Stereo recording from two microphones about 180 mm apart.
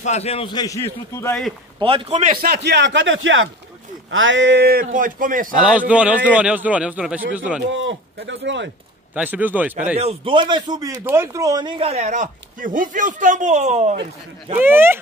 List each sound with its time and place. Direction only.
0.0 s a man's voice: 35° left (ahead or behind); by 1.4 s 15° left (ahead or behind)
1.8 s a man's voice: 30° right (ahead or behind)
2.2 s a man's voice: 55° right (ahead or behind)
4.8 s a man's voice: 50° right (ahead or behind)
5.6 s a man's voice: 5° right (ahead or behind)
7.7 s speech: 90° right
9.1 s a man's voice: 10° right (ahead or behind)
9.9 s a man's voice: 35° right (ahead or behind)
14.6 s a man's voice: 10° right (ahead or behind)